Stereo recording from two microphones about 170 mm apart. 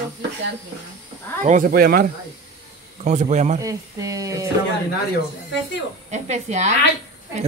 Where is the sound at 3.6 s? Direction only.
20° right (ahead or behind).